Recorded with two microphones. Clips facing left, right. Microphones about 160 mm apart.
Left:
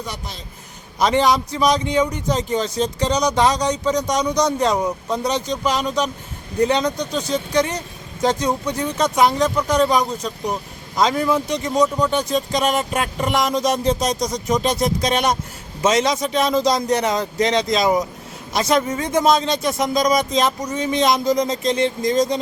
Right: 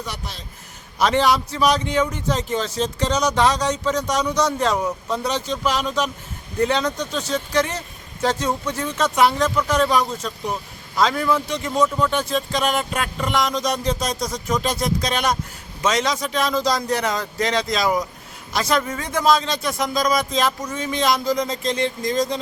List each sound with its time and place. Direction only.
1.0 s speech: 15° left (ahead or behind)
12.5 s a sound: 40° left (ahead or behind)
13.3 s speech: 25° left (ahead or behind)
21.6 s speech: centre (ahead or behind)